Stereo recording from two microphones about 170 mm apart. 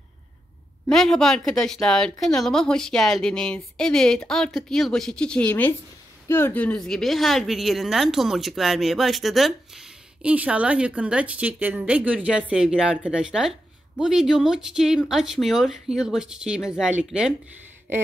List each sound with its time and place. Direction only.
0.8 s a woman's voice: 5° left (ahead or behind)